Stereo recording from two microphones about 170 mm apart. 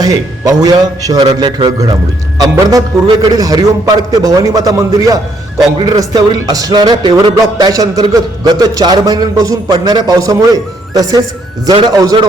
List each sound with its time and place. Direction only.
0.0 s speech: 20° right (ahead or behind)